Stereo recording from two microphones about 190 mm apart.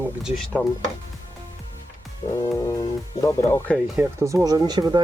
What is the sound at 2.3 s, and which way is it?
Speech, 15° left (ahead or behind).